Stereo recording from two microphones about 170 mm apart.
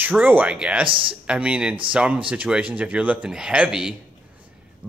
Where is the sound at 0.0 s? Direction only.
10° right (ahead or behind).